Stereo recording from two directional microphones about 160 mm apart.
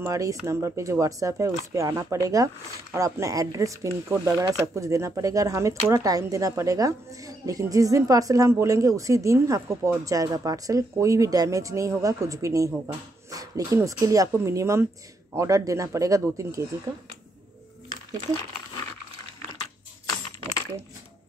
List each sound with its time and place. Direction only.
0.0 s speech: 20° right (ahead or behind)